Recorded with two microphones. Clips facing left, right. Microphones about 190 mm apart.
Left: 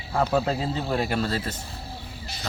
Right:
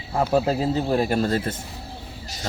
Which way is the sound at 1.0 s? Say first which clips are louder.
Right 4 dB; 40° right (ahead or behind).